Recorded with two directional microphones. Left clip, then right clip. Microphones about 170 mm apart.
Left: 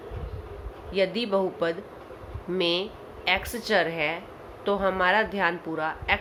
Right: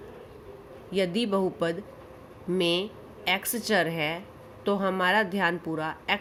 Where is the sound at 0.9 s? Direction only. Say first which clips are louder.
Left 2 dB; 40° right (ahead or behind).